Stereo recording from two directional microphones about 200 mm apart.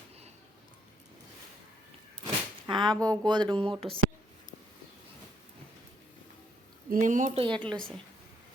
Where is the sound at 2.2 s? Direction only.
25° right (ahead or behind).